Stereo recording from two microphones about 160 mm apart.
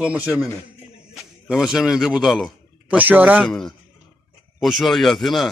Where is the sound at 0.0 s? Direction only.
5° right (ahead or behind).